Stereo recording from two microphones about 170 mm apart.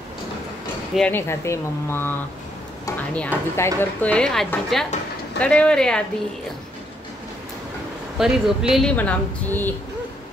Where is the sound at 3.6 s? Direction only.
15° left (ahead or behind).